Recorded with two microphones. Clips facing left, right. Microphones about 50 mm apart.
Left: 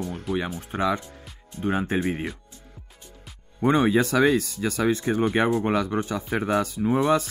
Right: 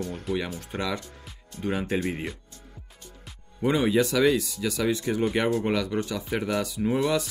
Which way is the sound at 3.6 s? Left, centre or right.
Left.